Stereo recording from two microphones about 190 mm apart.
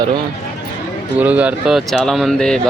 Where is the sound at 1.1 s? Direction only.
10° right (ahead or behind).